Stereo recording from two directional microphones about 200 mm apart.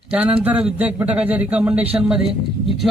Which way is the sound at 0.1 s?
5° right (ahead or behind).